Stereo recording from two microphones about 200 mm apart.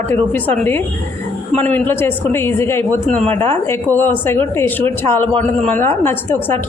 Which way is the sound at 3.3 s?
10° left (ahead or behind).